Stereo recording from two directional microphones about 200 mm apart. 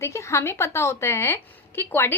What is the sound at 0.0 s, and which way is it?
A woman's voice, 15° left (ahead or behind).